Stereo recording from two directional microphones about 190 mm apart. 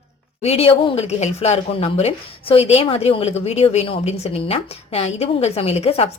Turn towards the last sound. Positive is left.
turn(degrees=30)  # may be behind; listen again after turning